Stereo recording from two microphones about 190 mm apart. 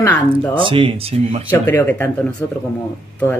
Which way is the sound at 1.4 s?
10° left (ahead or behind).